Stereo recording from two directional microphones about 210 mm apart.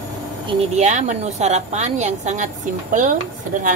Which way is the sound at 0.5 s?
30° right (ahead or behind).